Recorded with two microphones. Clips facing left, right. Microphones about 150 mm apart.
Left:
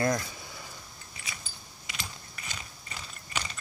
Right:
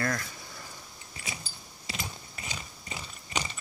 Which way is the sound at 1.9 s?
35° right (ahead or behind).